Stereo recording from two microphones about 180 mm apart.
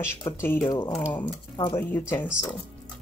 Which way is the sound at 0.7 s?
20° left (ahead or behind).